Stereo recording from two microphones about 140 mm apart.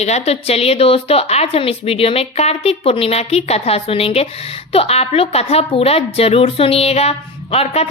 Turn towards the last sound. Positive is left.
turn(degrees=45)  # may be behind; listen again after turning